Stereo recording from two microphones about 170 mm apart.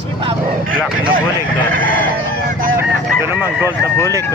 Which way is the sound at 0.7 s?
55° right (ahead or behind).